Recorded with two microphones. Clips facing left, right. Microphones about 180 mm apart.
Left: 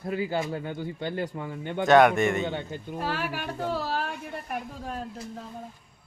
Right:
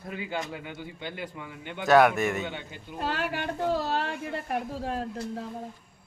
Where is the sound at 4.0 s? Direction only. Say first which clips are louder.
Right 1 dB; 70° right (ahead or behind).